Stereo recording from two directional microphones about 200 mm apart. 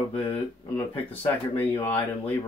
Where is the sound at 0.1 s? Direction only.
30° left (ahead or behind).